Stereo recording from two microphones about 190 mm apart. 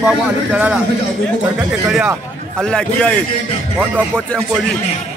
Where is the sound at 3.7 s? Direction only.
10° right (ahead or behind).